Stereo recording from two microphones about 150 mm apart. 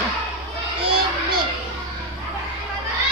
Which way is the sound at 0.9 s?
35° right (ahead or behind).